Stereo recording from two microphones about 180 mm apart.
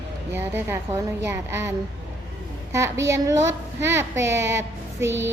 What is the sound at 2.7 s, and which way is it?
Child singing, 15° right (ahead or behind).